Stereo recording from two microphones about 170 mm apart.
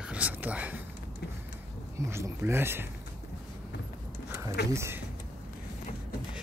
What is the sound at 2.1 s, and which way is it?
Speech, 15° right (ahead or behind).